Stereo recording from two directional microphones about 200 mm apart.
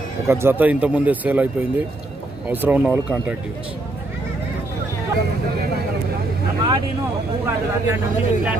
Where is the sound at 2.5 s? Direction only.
10° right (ahead or behind).